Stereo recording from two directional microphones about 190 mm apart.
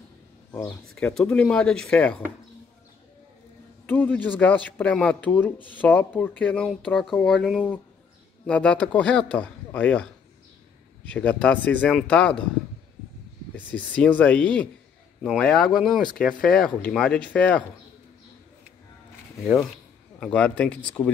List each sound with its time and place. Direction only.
0.5 s speech: 10° left (ahead or behind)
3.8 s a man's voice: 10° left (ahead or behind)
11.1 s speech: 5° left (ahead or behind)
13.6 s speech: 10° left (ahead or behind)
19.4 s speech: centre (ahead or behind)